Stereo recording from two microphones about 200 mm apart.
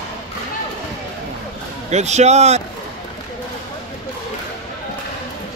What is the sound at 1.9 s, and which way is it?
Speech, 35° right (ahead or behind).